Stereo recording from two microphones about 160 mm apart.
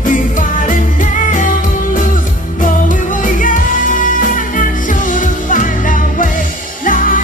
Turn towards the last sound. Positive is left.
turn(degrees=55)  # may be behind; listen again after turning